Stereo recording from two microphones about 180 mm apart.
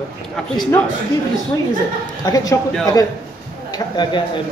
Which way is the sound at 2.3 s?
20° left (ahead or behind).